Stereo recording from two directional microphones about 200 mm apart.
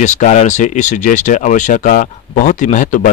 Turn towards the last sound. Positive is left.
turn(degrees=40)  # may be behind; listen again after turning